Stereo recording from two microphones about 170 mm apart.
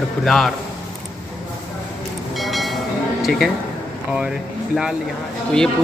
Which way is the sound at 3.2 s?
Centre (ahead or behind).